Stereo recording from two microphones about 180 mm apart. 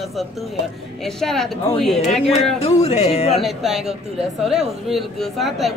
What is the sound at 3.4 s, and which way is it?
A woman's voice, centre (ahead or behind).